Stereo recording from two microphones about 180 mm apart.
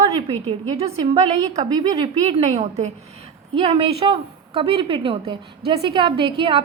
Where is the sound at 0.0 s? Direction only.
30° right (ahead or behind).